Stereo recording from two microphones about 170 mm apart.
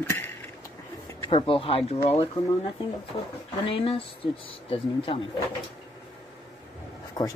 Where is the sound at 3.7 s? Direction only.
35° left (ahead or behind).